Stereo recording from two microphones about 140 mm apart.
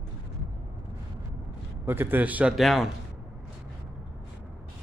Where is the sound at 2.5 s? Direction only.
Centre (ahead or behind).